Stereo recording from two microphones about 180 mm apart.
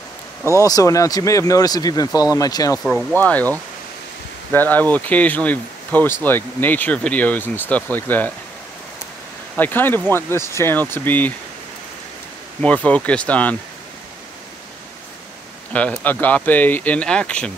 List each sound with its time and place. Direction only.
0.6 s speech: 20° left (ahead or behind)
2.8 s speech: centre (ahead or behind)
9.6 s speech: 10° left (ahead or behind)
12.6 s speech: 5° left (ahead or behind)
15.7 s speech: 10° left (ahead or behind)